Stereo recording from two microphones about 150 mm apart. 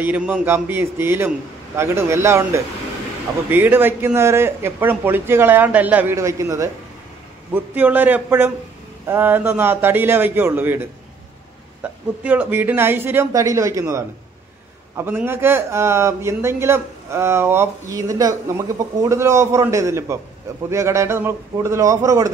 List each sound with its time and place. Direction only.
0.0 s a man's voice: 10° right (ahead or behind)